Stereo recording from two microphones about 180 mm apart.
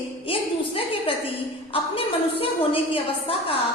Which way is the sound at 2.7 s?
30° left (ahead or behind).